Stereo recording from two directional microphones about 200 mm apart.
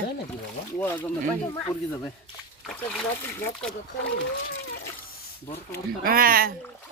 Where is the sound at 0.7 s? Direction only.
10° left (ahead or behind).